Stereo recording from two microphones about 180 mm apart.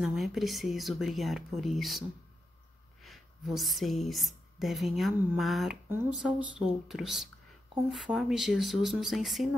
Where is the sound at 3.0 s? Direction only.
Centre (ahead or behind).